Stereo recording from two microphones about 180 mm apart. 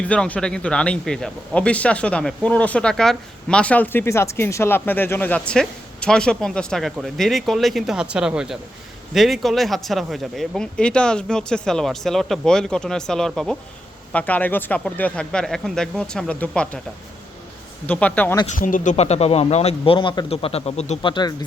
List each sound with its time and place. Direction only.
0.0 s speech: 5° left (ahead or behind)
17.8 s speech: 10° left (ahead or behind)
18.6 s speech: 45° left (ahead or behind); by 21.3 s 25° left (ahead or behind)